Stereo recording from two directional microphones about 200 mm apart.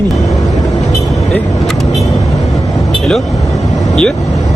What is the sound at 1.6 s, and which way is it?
Speech, centre (ahead or behind).